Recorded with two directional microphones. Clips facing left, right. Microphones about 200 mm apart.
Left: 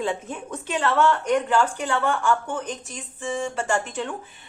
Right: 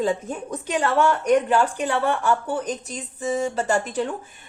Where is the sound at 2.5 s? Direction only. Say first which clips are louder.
Right 4 dB; 40° right (ahead or behind).